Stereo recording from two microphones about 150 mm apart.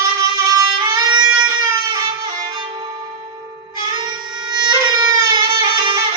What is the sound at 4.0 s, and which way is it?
Music, 30° right (ahead or behind).